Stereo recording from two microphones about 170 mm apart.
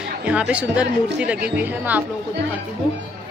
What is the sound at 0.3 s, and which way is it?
Speech, 5° right (ahead or behind).